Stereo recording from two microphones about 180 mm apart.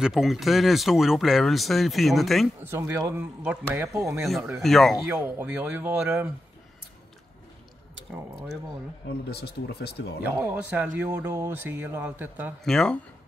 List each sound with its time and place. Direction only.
0.0 s speech: centre (ahead or behind)
2.6 s a man's voice: 15° right (ahead or behind)
4.0 s a man's voice: centre (ahead or behind)
9.3 s speech: 60° left (ahead or behind)
10.2 s a man's voice: 10° right (ahead or behind)
12.6 s speech: 5° left (ahead or behind)